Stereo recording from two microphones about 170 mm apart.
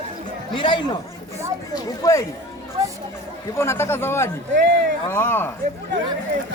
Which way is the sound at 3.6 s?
15° left (ahead or behind).